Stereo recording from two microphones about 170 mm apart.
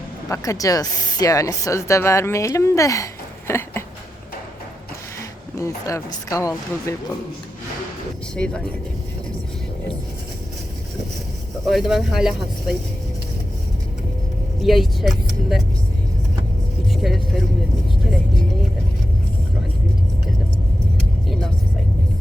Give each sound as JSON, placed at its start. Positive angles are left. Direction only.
{"t": 0.3, "sound": "speech", "side_deg": 20}
{"t": 5.5, "sound": "speech", "side_deg": 20}
{"t": 8.4, "sound": "speech", "side_deg": 5}
{"t": 11.6, "sound": "speech", "side_deg": 0}
{"t": 14.6, "sound": "speech", "side_deg": 0}
{"t": 16.9, "sound": "speech", "side_deg": 0}